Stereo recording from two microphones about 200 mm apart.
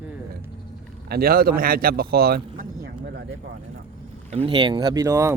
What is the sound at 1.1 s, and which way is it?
Speech, 50° right (ahead or behind).